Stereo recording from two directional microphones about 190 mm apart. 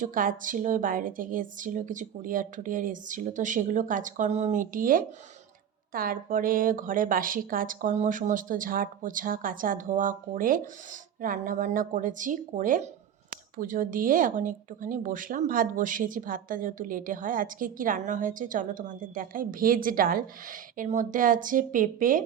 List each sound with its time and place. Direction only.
0.0 s speech: 45° right (ahead or behind)